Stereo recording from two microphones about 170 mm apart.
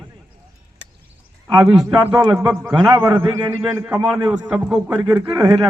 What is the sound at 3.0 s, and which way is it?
A man's voice, 20° right (ahead or behind).